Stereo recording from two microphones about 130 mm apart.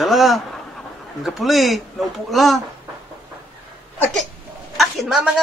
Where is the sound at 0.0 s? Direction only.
Centre (ahead or behind).